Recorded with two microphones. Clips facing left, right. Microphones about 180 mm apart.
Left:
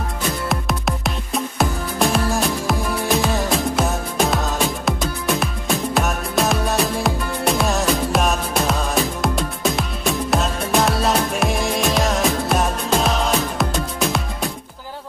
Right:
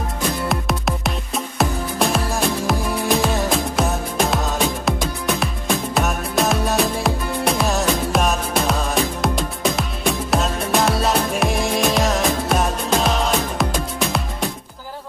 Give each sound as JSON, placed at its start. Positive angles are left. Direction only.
{"t": 0.5, "sound": "music", "side_deg": 0}